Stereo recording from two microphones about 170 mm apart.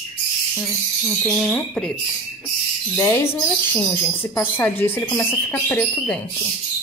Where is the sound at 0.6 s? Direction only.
Centre (ahead or behind).